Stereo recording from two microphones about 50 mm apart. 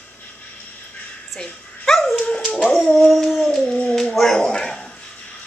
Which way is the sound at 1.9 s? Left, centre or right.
Centre.